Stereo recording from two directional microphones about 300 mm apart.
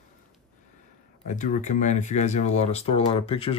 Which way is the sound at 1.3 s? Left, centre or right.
Left.